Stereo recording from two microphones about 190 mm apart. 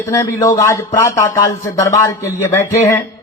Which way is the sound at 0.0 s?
15° left (ahead or behind).